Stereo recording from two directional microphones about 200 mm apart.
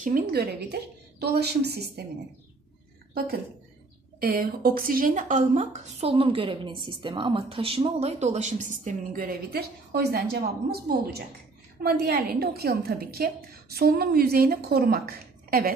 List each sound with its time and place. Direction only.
0.0 s a woman's voice: 45° right (ahead or behind)
4.2 s a woman's voice: 50° right (ahead or behind)